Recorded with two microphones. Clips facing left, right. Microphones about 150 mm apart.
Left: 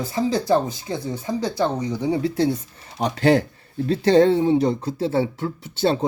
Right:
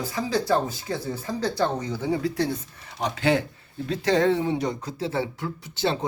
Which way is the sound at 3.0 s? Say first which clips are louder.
Left 5 dB; 40° left (ahead or behind).